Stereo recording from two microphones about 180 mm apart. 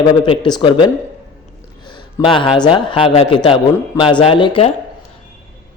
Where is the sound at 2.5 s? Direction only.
25° left (ahead or behind).